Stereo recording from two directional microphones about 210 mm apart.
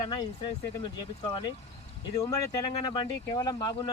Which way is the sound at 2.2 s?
20° left (ahead or behind).